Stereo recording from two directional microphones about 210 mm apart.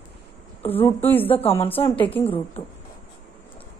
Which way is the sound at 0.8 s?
10° left (ahead or behind).